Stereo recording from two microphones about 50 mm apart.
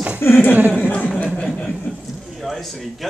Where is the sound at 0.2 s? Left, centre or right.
Left.